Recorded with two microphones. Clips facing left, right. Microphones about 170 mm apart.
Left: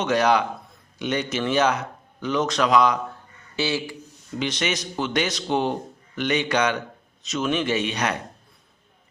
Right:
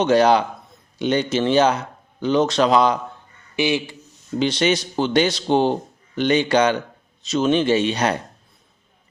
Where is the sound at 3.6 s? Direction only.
20° right (ahead or behind).